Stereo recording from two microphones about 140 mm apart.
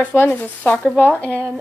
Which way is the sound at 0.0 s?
15° left (ahead or behind).